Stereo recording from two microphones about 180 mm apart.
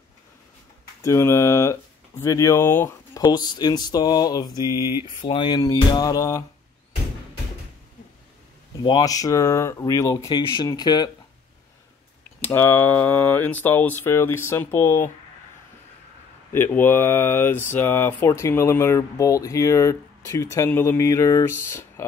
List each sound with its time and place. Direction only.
1.0 s speech: 15° left (ahead or behind)
3.2 s speech: 25° left (ahead or behind)
4.6 s mantra: 15° right (ahead or behind)
5.2 s speech: 25° left (ahead or behind)
8.8 s speech: 20° left (ahead or behind)
12.4 s speech: 10° left (ahead or behind)
16.5 s speech: 10° left (ahead or behind)